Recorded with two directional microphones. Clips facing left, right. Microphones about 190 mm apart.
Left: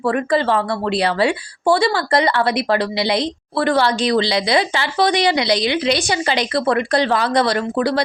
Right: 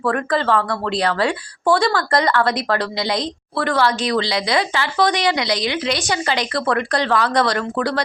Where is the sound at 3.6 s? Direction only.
25° left (ahead or behind).